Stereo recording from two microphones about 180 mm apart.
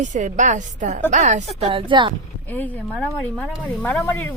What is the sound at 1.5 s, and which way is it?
Speech, 30° right (ahead or behind).